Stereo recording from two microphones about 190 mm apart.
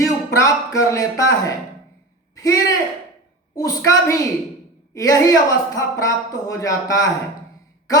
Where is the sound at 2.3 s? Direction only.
20° left (ahead or behind).